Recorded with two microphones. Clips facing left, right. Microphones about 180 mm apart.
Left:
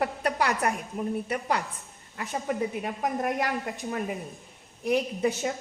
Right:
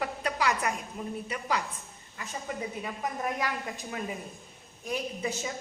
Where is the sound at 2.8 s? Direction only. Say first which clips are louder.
Left 5 dB; 55° left (ahead or behind).